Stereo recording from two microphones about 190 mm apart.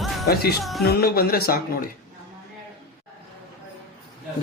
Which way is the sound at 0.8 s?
55° left (ahead or behind).